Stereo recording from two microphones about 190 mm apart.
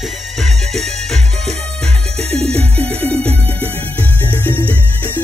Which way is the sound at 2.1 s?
35° right (ahead or behind).